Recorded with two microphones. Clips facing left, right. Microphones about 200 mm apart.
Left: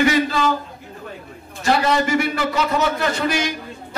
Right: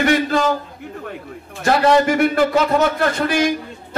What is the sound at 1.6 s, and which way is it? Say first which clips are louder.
Speech: right 4 dB; 55° right (ahead or behind).